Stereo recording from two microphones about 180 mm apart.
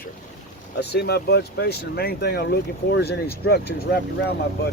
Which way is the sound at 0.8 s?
65° left (ahead or behind).